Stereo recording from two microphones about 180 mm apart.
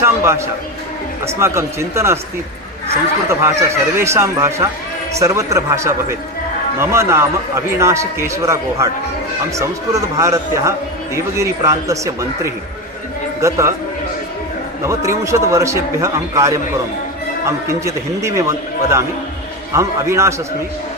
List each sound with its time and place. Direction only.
0.0 s a man's voice: 15° right (ahead or behind)
14.8 s a man's voice: 15° right (ahead or behind)